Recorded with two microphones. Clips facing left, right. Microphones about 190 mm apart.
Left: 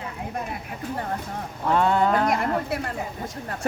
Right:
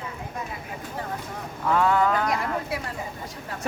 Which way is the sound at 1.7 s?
25° left (ahead or behind).